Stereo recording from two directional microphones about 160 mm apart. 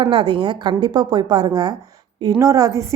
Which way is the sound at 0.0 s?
30° right (ahead or behind).